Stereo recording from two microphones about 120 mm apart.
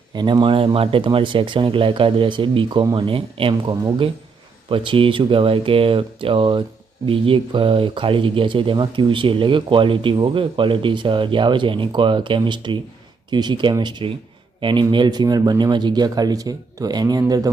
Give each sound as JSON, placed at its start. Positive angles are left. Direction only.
{"t": 0.1, "sound": "speech", "side_deg": -35}